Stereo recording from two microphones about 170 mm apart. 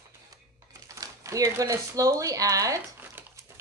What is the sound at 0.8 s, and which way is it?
Speech, 20° right (ahead or behind).